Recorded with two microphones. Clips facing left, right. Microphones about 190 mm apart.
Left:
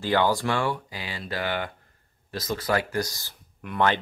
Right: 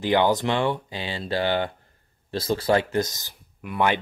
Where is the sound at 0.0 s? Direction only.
20° right (ahead or behind).